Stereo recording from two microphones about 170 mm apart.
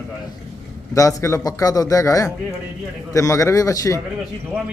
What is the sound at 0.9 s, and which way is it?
A man's voice, 20° left (ahead or behind).